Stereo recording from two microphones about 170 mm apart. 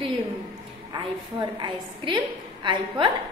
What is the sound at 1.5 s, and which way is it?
A woman's voice, 30° right (ahead or behind).